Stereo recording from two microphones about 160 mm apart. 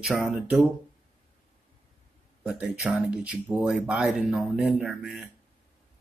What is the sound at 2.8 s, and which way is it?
Speech, 5° right (ahead or behind).